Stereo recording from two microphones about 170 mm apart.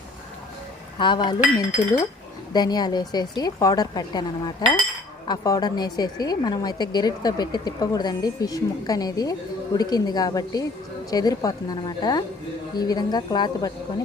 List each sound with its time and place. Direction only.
0.9 s a woman's voice: 25° left (ahead or behind)